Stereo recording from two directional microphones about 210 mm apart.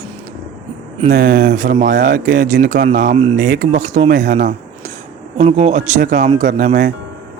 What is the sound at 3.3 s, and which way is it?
Speech, 55° right (ahead or behind).